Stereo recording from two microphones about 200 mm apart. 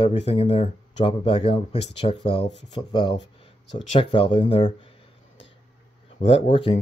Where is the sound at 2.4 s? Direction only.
60° left (ahead or behind).